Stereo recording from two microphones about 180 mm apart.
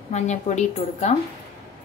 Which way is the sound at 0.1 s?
40° left (ahead or behind).